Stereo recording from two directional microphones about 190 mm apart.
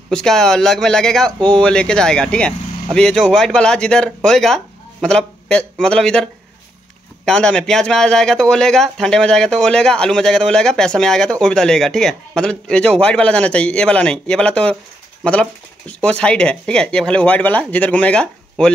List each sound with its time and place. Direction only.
0.1 s a man's voice: 5° left (ahead or behind)
7.2 s speech: 5° left (ahead or behind)
15.9 s speech: 5° left (ahead or behind)